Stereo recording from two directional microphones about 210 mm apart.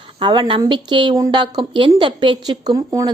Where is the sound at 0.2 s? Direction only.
25° right (ahead or behind).